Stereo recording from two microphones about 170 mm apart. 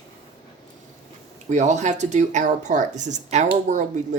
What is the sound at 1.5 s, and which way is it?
Speech, 45° right (ahead or behind).